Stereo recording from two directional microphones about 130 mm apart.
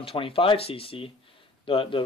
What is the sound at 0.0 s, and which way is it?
A man's voice, 45° left (ahead or behind).